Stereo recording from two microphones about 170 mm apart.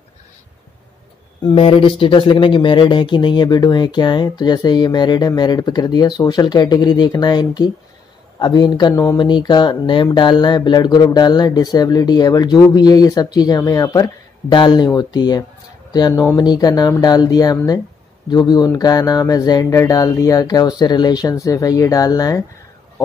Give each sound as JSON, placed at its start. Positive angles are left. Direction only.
{"t": 1.4, "sound": "speech", "side_deg": 30}